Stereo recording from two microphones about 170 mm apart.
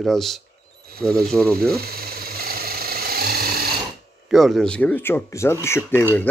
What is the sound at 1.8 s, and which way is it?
Ratchet, 60° right (ahead or behind).